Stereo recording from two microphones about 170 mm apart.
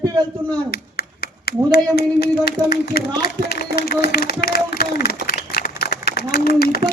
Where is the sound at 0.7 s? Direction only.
65° left (ahead or behind).